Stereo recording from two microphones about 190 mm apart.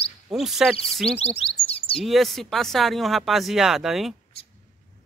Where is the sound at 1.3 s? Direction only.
30° left (ahead or behind).